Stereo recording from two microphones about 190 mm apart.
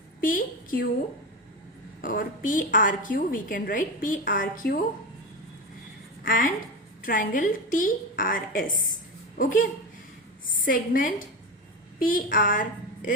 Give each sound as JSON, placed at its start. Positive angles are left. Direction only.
{"t": 0.2, "sound": "a woman's voice", "side_deg": 45}
{"t": 2.0, "sound": "a woman's voice", "side_deg": 45}
{"t": 6.2, "sound": "a woman's voice", "side_deg": 45}